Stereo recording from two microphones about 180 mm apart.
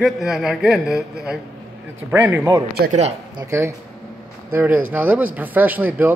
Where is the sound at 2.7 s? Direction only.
60° right (ahead or behind).